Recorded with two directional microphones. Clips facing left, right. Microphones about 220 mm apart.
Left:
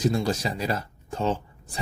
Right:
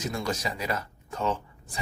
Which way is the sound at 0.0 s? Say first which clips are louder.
Left 6 dB; 30° left (ahead or behind).